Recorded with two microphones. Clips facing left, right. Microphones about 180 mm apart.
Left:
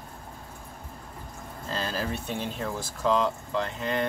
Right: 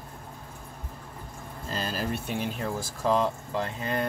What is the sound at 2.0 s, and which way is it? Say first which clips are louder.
Speech: right 1 dB; 10° right (ahead or behind).